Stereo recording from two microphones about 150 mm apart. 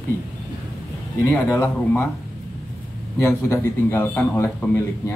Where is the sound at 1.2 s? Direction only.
20° left (ahead or behind).